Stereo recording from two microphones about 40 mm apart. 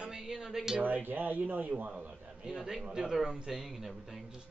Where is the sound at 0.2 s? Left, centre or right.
Centre.